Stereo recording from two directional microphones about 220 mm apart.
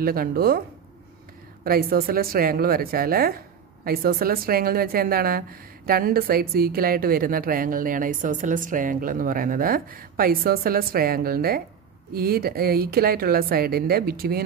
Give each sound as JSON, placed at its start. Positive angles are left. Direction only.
{"t": 0.0, "sound": "a woman's voice", "side_deg": -40}
{"t": 1.6, "sound": "a woman's voice", "side_deg": -40}